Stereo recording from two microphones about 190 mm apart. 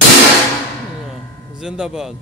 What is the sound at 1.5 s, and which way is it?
Speech, 5° right (ahead or behind).